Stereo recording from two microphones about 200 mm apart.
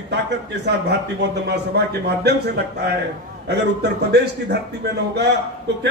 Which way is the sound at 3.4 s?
55° right (ahead or behind).